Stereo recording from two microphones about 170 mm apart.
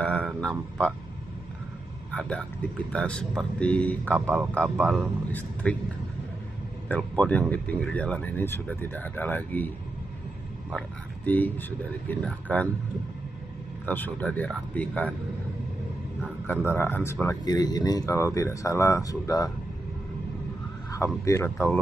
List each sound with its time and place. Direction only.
0.0 s speech: 5° left (ahead or behind)
2.1 s speech: 5° left (ahead or behind)
6.9 s speech: 5° left (ahead or behind)
11.2 s speech: 10° left (ahead or behind)
13.8 s speech: 10° left (ahead or behind)
16.6 s speech: 15° left (ahead or behind)
20.9 s speech: 15° left (ahead or behind)